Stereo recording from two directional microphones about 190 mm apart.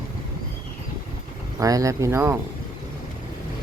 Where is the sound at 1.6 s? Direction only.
15° right (ahead or behind).